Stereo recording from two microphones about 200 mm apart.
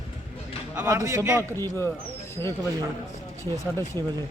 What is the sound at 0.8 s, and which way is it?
Speech, 15° right (ahead or behind).